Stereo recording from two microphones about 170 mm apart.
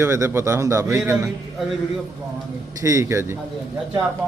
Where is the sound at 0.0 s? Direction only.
15° right (ahead or behind).